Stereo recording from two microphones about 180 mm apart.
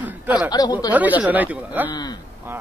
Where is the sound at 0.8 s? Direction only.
10° right (ahead or behind).